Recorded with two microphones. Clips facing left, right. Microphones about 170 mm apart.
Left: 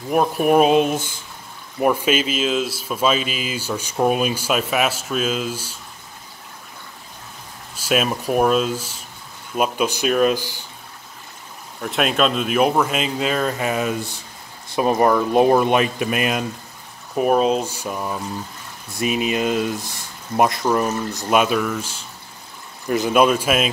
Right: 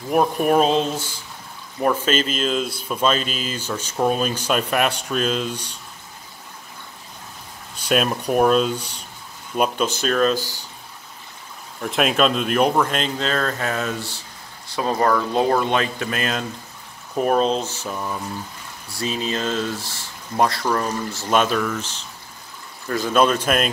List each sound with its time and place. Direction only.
0.1 s speech: centre (ahead or behind)
7.7 s speech: 5° left (ahead or behind)
11.8 s speech: centre (ahead or behind)